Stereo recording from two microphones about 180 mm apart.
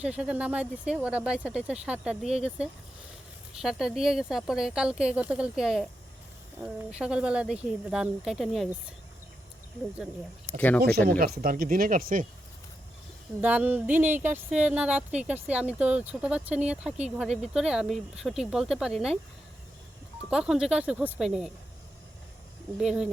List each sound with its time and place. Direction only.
0.0 s a woman's voice: 5° right (ahead or behind)
10.8 s speech: 60° right (ahead or behind)
13.4 s a woman's voice: 10° right (ahead or behind)
20.3 s a woman's voice: 5° right (ahead or behind)
22.8 s a woman's voice: 5° right (ahead or behind)